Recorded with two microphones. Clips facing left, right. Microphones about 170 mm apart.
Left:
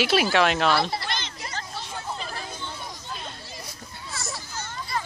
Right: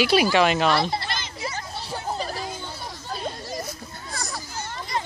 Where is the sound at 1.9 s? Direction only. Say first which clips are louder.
Right 6 dB; 40° right (ahead or behind).